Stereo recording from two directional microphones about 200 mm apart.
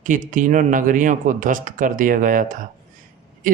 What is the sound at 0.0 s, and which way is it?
Speech, 40° right (ahead or behind).